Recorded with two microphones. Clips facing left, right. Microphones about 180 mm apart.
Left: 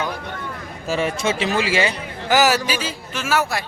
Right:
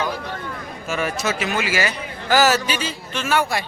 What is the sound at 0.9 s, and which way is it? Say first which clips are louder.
A man's voice: left 3 dB; 25° left (ahead or behind).